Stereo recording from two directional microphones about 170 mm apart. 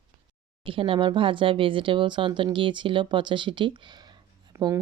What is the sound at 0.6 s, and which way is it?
Speech, 30° right (ahead or behind).